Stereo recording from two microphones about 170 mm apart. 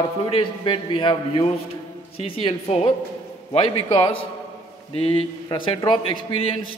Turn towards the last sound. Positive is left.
turn(degrees=30)  # may be behind; listen again after turning